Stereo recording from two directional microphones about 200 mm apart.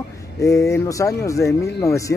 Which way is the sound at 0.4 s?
15° left (ahead or behind).